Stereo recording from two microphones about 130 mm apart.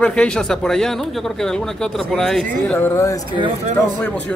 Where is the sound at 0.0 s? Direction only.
5° left (ahead or behind).